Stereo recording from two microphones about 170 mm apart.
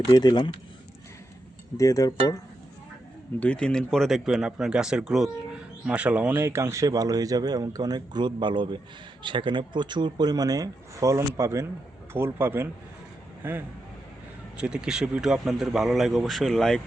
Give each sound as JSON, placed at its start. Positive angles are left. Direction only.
{"t": 0.1, "sound": "speech", "side_deg": 25}
{"t": 1.7, "sound": "speech", "side_deg": 20}
{"t": 3.4, "sound": "a man's voice", "side_deg": 5}